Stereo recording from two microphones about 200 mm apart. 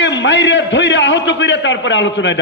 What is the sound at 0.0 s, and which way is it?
A man's voice, 65° left (ahead or behind).